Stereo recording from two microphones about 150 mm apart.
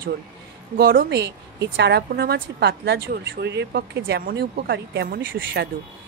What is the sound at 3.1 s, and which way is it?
A woman's voice, 90° right.